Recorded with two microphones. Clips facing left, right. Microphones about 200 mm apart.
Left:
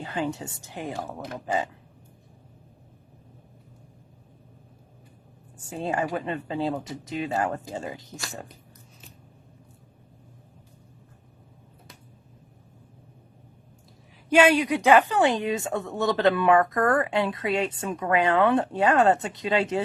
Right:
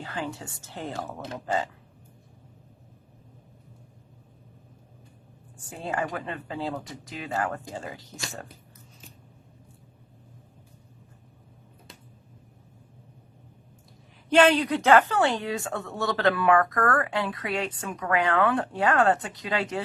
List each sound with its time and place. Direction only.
0.0 s a woman's voice: 20° left (ahead or behind)
5.5 s a woman's voice: 25° left (ahead or behind)
14.3 s a woman's voice: 10° left (ahead or behind)